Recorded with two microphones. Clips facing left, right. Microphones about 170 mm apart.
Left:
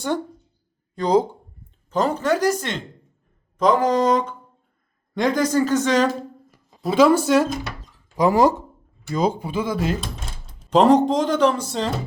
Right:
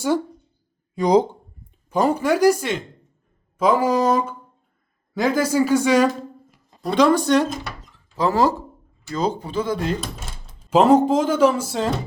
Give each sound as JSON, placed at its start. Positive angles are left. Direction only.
{"t": 0.9, "sound": "speech", "side_deg": -15}
{"t": 6.8, "sound": "speech", "side_deg": 5}